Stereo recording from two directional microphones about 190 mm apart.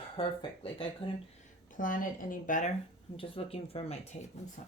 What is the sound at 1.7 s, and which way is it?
Speech, 45° left (ahead or behind).